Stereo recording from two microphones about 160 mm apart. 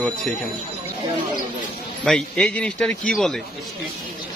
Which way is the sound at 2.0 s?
5° left (ahead or behind).